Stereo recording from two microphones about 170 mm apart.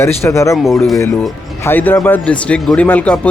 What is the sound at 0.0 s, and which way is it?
Speech, 15° left (ahead or behind).